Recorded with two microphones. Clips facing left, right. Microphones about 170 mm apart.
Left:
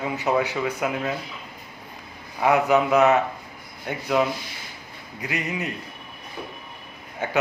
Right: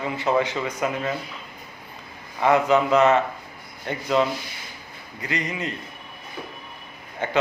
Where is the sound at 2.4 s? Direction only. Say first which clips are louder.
Even; 10° left (ahead or behind).